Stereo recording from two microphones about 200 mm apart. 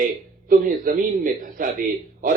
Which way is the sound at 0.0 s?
45° right (ahead or behind).